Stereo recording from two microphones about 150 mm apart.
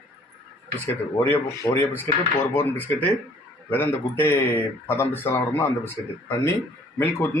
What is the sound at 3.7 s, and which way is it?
Speech, 15° left (ahead or behind).